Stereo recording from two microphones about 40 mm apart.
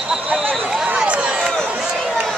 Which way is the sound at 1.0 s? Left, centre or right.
Right.